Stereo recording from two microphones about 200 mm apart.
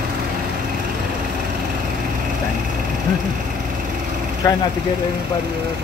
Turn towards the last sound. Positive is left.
turn(degrees=15)  # may be behind; listen again after turning